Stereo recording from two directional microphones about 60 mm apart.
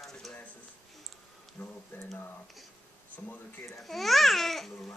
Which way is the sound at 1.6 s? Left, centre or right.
Left.